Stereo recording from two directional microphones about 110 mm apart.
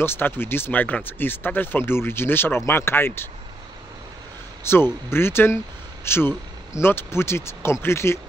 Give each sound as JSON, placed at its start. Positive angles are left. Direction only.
{"t": 0.0, "sound": "speech", "side_deg": 20}
{"t": 4.6, "sound": "speech", "side_deg": 20}